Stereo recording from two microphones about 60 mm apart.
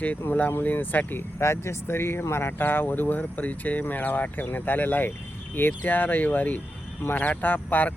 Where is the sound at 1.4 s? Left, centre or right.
Left.